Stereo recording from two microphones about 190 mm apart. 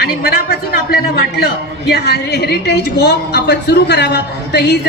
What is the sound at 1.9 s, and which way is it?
A woman's voice, 60° left (ahead or behind).